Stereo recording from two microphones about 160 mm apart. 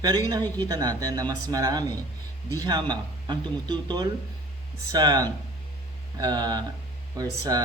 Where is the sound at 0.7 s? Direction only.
20° right (ahead or behind).